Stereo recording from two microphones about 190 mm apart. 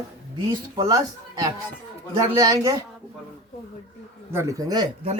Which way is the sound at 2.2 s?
20° right (ahead or behind).